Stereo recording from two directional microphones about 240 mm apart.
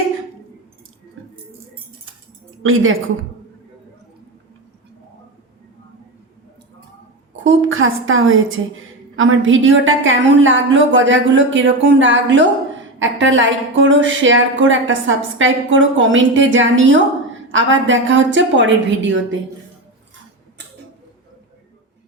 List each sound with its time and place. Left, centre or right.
2.6 s a woman's voice: right
7.3 s a woman's voice: right